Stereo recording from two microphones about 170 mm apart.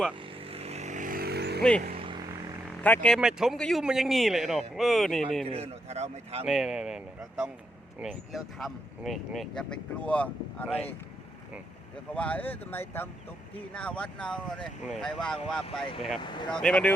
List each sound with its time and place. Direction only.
0.3 s vehicle: 35° right (ahead or behind); by 1.6 s 70° right (ahead or behind)
1.9 s vehicle: 30° right (ahead or behind)
2.8 s speech: 10° left (ahead or behind)
3.2 s speech: 5° right (ahead or behind)
5.5 s a man's voice: 35° right (ahead or behind)
6.5 s speech: 5° right (ahead or behind)
12.1 s speech: 10° left (ahead or behind)